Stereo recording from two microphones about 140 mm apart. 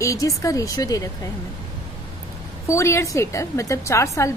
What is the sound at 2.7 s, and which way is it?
A woman's voice, 20° left (ahead or behind).